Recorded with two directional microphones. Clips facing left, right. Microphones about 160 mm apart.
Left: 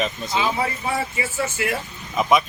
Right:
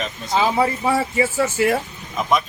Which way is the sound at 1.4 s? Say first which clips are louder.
Right 5 dB; 40° right (ahead or behind).